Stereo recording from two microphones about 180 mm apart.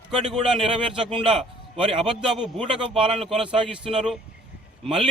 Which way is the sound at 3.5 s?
30° right (ahead or behind).